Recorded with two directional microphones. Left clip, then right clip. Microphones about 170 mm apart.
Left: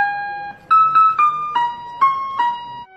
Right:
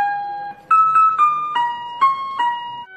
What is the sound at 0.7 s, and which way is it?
Music, 5° right (ahead or behind).